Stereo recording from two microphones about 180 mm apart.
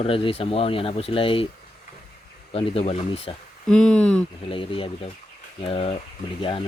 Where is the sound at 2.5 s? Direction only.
30° left (ahead or behind).